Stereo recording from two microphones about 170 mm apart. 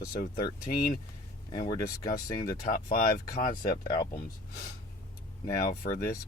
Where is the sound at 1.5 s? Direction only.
25° left (ahead or behind).